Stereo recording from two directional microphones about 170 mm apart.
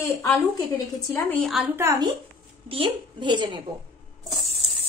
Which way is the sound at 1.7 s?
20° right (ahead or behind).